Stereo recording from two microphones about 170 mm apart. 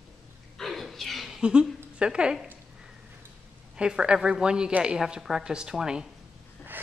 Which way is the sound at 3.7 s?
5° right (ahead or behind).